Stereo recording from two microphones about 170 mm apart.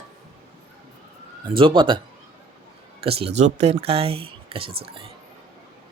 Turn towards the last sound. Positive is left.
turn(degrees=-35)  # may be behind; listen again after turning